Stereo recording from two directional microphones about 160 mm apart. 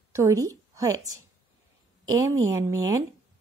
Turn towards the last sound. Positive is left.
turn(degrees=-20)  # may be behind; listen again after turning